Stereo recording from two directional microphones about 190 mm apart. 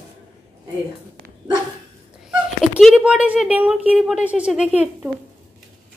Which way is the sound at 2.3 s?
5° right (ahead or behind).